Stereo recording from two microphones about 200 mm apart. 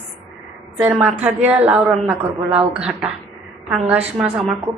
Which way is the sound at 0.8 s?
5° right (ahead or behind).